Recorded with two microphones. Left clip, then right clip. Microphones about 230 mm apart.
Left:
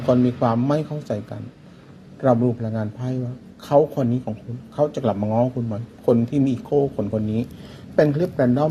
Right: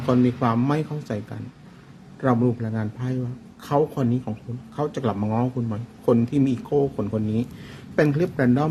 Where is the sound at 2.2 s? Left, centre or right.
Centre.